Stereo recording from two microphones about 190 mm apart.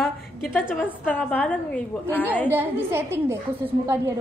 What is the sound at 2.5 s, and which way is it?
A woman's voice, 10° right (ahead or behind).